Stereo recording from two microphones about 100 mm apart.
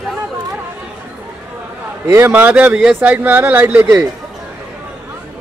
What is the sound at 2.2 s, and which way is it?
Speech, 20° right (ahead or behind).